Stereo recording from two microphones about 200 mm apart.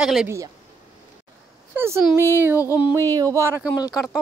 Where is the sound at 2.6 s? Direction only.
15° left (ahead or behind).